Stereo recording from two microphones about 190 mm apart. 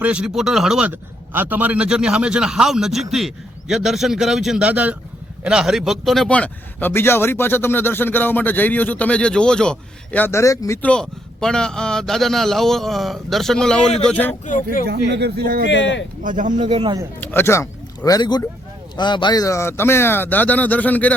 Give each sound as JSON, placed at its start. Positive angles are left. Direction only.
{"t": 0.0, "sound": "a man's voice", "side_deg": -5}
{"t": 14.4, "sound": "speech", "side_deg": 45}
{"t": 14.8, "sound": "speech", "side_deg": -60}
{"t": 15.6, "sound": "speech", "side_deg": 75}
{"t": 16.2, "sound": "speech", "side_deg": -40}
{"t": 17.2, "sound": "speech", "side_deg": 15}